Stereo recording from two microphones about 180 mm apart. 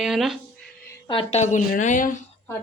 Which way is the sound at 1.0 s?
25° left (ahead or behind).